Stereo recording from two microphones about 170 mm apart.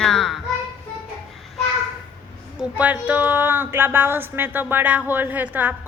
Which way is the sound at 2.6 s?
10° right (ahead or behind).